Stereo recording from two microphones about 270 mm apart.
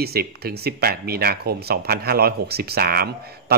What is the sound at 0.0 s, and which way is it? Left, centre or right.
Speech, right.